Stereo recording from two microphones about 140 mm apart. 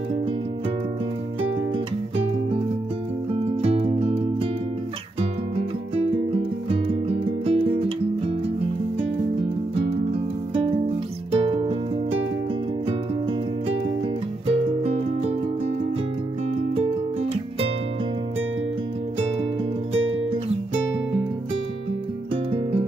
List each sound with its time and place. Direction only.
3.3 s music: 45° right (ahead or behind)
11.3 s music: 40° right (ahead or behind)
14.5 s music: 45° right (ahead or behind)
16.7 s music: 45° right (ahead or behind)
22.5 s music: 40° right (ahead or behind)